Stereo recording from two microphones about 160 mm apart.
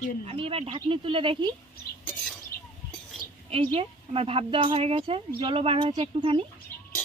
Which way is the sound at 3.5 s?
40° right (ahead or behind).